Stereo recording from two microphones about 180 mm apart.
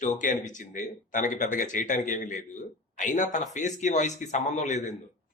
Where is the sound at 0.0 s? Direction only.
45° left (ahead or behind).